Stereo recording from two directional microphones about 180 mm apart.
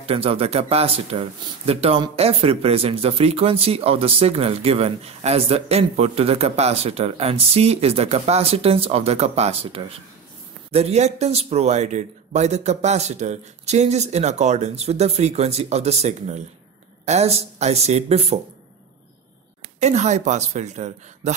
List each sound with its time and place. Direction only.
0.0 s speech: 30° right (ahead or behind)
19.8 s speech: 40° right (ahead or behind)